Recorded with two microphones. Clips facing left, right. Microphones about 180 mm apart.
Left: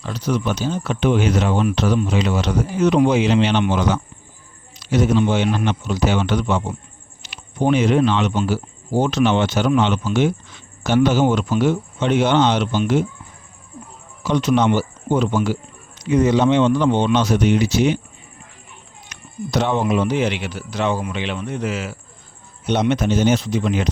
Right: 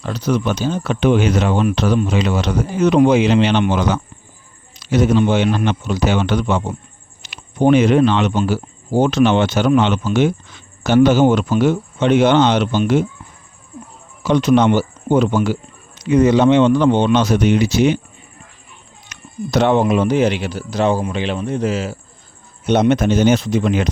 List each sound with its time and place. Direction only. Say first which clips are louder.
0.0 s speech: right 3 dB; 60° right (ahead or behind)
14.3 s speech: right 4 dB; 65° right (ahead or behind)
19.0 s speech: right 3 dB; 65° right (ahead or behind); by 21.9 s 35° right (ahead or behind)
22.6 s speech: right 4 dB; 50° right (ahead or behind)